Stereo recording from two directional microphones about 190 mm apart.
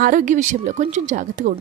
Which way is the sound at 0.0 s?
45° right (ahead or behind).